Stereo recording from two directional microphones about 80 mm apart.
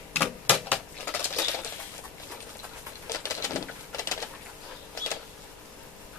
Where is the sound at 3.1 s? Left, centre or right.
Left.